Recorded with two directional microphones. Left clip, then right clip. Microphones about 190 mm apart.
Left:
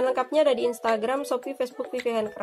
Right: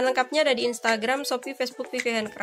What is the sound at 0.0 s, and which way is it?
Speech, 5° right (ahead or behind).